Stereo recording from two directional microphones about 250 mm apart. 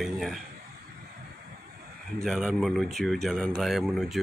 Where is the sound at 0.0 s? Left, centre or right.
Centre.